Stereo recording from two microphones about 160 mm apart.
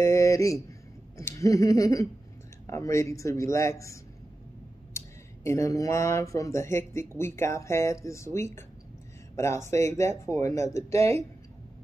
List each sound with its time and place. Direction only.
0.0 s a sound: 20° left (ahead or behind)
1.1 s a man's voice: 20° left (ahead or behind)
11.0 s speech: 40° right (ahead or behind)